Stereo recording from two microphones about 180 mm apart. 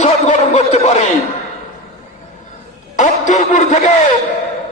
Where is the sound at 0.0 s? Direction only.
40° left (ahead or behind).